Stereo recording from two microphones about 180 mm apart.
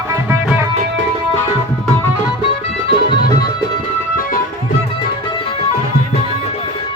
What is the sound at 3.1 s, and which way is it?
Music, 25° left (ahead or behind).